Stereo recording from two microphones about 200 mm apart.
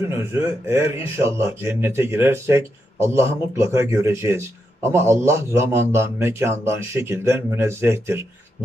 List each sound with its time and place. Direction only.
0.1 s a man's voice: 15° right (ahead or behind)